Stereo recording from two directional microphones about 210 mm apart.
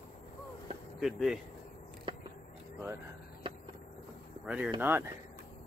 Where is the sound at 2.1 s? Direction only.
25° right (ahead or behind).